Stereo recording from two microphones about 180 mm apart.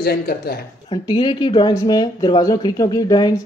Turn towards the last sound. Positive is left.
turn(degrees=20)  # may be behind; listen again after turning